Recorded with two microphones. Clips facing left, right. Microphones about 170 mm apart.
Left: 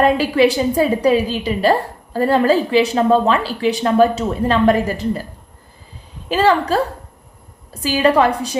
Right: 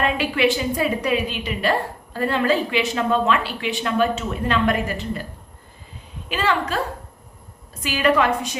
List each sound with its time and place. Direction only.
0.0 s a woman's voice: 35° left (ahead or behind)
6.2 s a woman's voice: 35° left (ahead or behind)